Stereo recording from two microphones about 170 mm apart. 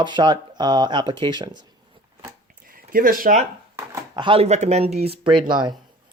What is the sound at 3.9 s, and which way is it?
Speech, 25° right (ahead or behind).